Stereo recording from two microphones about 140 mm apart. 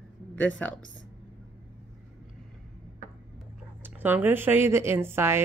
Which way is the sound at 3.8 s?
15° right (ahead or behind).